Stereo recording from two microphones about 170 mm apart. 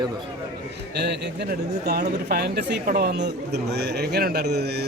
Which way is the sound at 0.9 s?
85° right.